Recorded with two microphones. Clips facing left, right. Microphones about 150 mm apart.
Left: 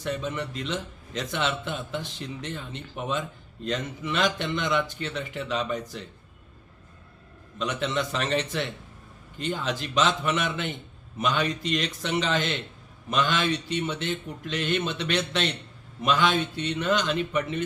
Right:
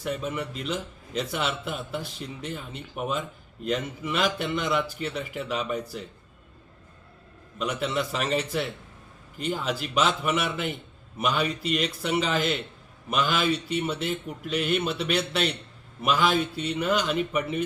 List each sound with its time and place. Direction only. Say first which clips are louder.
0.0 s a man's voice: even; 5° right (ahead or behind)
7.6 s a man's voice: even; 5° right (ahead or behind)